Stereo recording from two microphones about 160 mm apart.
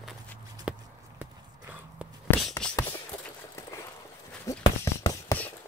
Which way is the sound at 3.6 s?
20° left (ahead or behind).